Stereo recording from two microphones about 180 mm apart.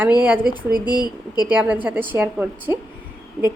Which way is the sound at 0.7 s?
25° left (ahead or behind).